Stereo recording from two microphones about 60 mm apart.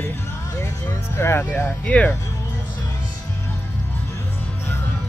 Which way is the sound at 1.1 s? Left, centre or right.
Left.